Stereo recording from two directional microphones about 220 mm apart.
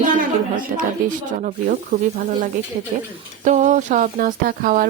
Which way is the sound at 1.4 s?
35° right (ahead or behind).